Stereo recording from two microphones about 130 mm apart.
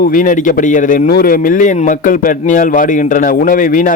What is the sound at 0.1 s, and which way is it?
Speech, 90° left.